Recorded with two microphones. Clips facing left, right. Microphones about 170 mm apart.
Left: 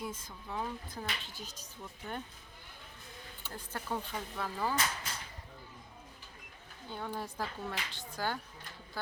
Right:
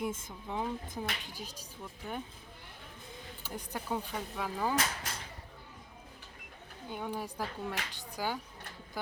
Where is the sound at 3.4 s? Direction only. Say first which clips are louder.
Right 2 dB; 15° right (ahead or behind).